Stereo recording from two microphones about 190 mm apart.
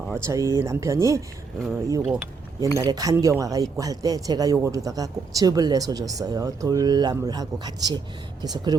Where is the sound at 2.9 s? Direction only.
20° right (ahead or behind).